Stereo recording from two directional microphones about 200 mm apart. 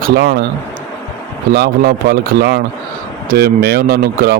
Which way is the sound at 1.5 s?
50° right (ahead or behind).